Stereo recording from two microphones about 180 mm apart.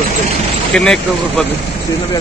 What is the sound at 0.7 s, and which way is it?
Speech, 5° left (ahead or behind).